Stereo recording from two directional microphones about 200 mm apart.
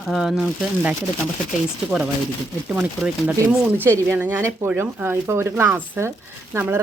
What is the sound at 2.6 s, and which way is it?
A woman's voice, 5° right (ahead or behind).